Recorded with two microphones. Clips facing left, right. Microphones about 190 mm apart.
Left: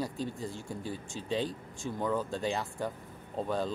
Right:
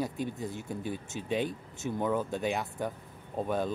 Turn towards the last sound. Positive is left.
turn(degrees=-15)  # may be behind; listen again after turning